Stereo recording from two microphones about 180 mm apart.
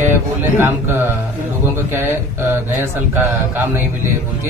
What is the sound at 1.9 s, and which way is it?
Speech, 10° right (ahead or behind).